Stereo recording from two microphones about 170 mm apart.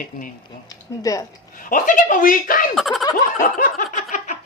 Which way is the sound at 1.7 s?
50° left (ahead or behind).